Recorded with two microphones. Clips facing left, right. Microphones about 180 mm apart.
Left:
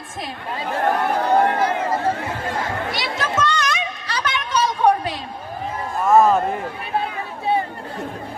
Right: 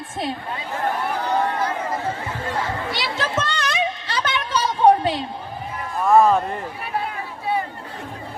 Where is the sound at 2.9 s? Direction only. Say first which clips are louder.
Even; 30° right (ahead or behind).